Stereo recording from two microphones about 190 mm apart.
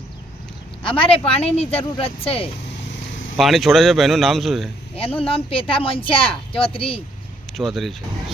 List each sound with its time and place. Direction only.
0.8 s speech: 30° left (ahead or behind)
3.3 s a man's voice: centre (ahead or behind)
4.9 s speech: 30° left (ahead or behind)
7.5 s a man's voice: centre (ahead or behind)